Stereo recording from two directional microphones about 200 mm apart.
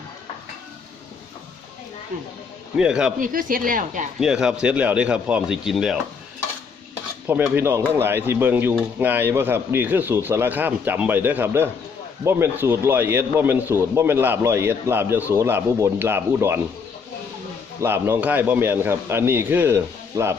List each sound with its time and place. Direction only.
2.7 s speech: 5° right (ahead or behind)
3.2 s speech: 45° right (ahead or behind)
4.2 s speech: 5° right (ahead or behind)
7.3 s speech: 10° right (ahead or behind)
17.7 s speech: 10° right (ahead or behind)